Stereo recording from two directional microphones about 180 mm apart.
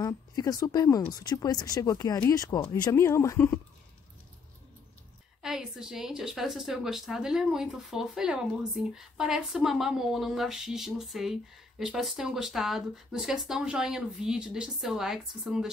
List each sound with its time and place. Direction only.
0.0 s speech: 20° left (ahead or behind)
5.4 s a woman's voice: 5° right (ahead or behind)